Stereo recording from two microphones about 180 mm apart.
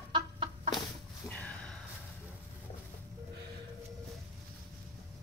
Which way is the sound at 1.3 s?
5° left (ahead or behind).